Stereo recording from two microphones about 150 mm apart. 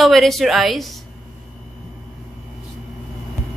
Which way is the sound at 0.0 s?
Centre (ahead or behind).